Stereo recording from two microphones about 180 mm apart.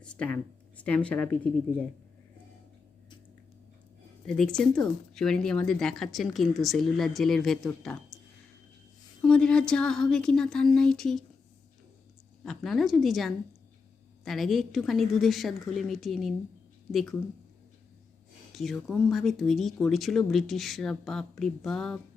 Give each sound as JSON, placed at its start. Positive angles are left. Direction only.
{"t": 0.0, "sound": "a sound", "side_deg": 5}
{"t": 0.8, "sound": "speech", "side_deg": 5}
{"t": 4.3, "sound": "speech", "side_deg": 5}
{"t": 9.2, "sound": "speech", "side_deg": 5}
{"t": 12.4, "sound": "speech", "side_deg": 0}
{"t": 18.5, "sound": "speech", "side_deg": 0}